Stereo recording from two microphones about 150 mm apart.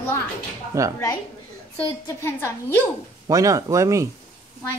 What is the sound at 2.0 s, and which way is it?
Speech, 15° left (ahead or behind).